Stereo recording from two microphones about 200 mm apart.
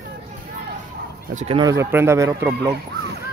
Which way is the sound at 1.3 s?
35° right (ahead or behind).